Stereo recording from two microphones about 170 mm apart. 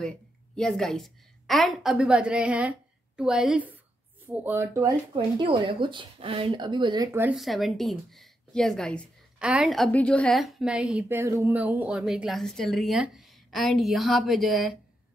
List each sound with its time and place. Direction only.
0.6 s a woman's voice: 5° left (ahead or behind); by 4.9 s 15° right (ahead or behind)
5.1 s speech: 30° right (ahead or behind)
7.1 s speech: 10° right (ahead or behind)
7.3 s a woman's voice: centre (ahead or behind)